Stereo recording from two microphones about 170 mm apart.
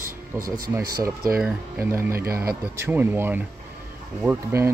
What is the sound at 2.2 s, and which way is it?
Speech, 65° right (ahead or behind).